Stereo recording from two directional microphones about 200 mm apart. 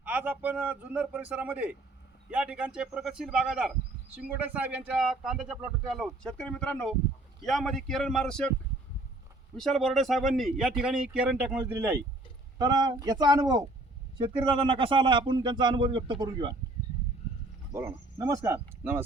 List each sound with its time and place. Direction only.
0.0 s a man's voice: 10° right (ahead or behind)
9.6 s speech: centre (ahead or behind); by 16.5 s 25° right (ahead or behind)
17.7 s a man's voice: 15° right (ahead or behind)